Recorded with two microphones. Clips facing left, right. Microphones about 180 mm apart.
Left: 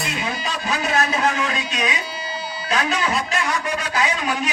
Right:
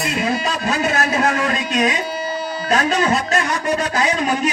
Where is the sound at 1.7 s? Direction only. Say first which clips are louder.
Right 7 dB; 45° right (ahead or behind).